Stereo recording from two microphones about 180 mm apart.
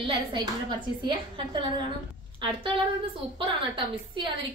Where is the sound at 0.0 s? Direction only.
25° right (ahead or behind).